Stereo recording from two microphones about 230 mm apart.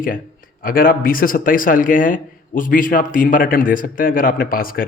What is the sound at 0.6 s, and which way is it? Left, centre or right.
Speech, left.